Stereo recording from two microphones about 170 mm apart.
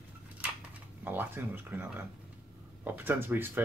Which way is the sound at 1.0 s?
10° right (ahead or behind).